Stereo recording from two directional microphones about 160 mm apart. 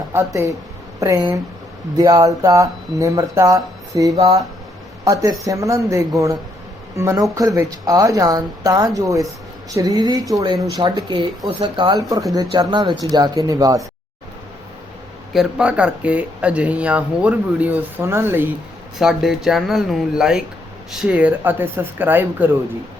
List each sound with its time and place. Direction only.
0.1 s speech: 15° right (ahead or behind)
15.3 s speech: 5° right (ahead or behind)
18.9 s speech: centre (ahead or behind)